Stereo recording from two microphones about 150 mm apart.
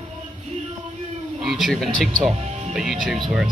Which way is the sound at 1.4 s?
Centre (ahead or behind).